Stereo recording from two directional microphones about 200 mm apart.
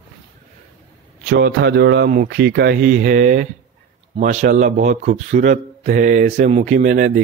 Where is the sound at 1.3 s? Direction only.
60° right (ahead or behind).